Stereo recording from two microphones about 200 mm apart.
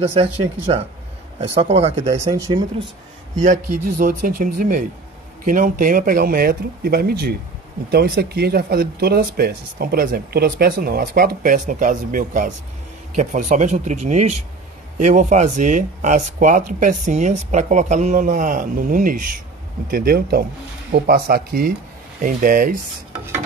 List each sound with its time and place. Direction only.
0.0 s speech: 30° right (ahead or behind)
2.0 s speech: 15° right (ahead or behind)
4.0 s speech: 40° right (ahead or behind)